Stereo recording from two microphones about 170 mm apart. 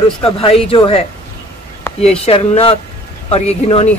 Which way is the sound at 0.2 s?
35° left (ahead or behind).